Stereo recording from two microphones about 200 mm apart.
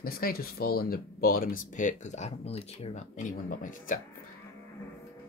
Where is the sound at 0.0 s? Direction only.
50° left (ahead or behind).